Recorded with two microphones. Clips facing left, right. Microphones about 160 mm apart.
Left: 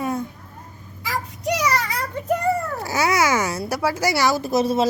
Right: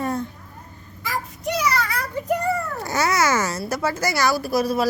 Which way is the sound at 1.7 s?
25° left (ahead or behind).